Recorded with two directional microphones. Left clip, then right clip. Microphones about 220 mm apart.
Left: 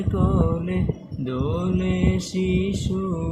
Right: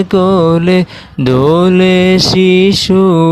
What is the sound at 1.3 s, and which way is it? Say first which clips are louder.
Mantra: right 18 dB; 50° right (ahead or behind).